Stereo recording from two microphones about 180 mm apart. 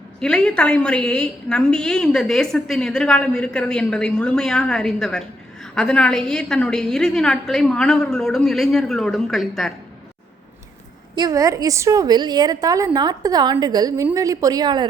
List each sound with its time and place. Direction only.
0.2 s a woman's voice: 5° left (ahead or behind)
11.1 s a woman's voice: 20° right (ahead or behind)